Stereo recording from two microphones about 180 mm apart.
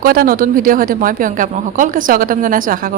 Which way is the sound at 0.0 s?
55° right (ahead or behind).